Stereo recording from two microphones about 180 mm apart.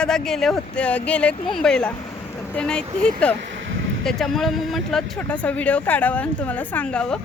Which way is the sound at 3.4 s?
90° right.